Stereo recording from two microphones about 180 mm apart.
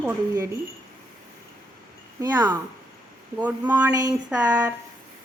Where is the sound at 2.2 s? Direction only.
25° right (ahead or behind).